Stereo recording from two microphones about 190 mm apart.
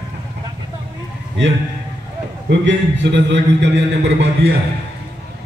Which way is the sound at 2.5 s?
70° right (ahead or behind).